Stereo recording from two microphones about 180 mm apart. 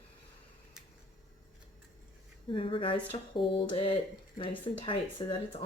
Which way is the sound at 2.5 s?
30° left (ahead or behind).